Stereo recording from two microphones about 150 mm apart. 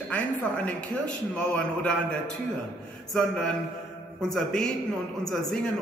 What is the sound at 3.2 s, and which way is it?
A man's voice, 5° left (ahead or behind).